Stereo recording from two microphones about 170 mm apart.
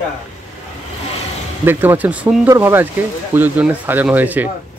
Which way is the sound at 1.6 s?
10° right (ahead or behind).